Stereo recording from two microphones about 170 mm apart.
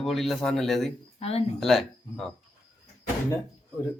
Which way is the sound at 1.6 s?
Centre (ahead or behind).